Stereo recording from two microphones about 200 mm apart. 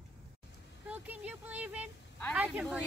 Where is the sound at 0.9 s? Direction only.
5° right (ahead or behind).